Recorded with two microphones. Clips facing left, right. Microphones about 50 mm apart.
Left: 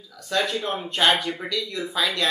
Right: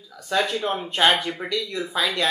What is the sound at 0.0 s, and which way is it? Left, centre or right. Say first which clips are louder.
Speech: right 1 dB; centre.